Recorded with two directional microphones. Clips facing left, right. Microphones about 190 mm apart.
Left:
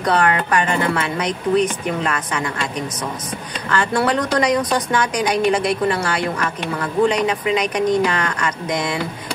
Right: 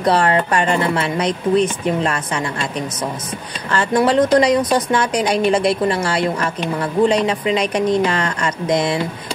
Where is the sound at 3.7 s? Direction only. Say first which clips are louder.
Right 4 dB; 25° right (ahead or behind).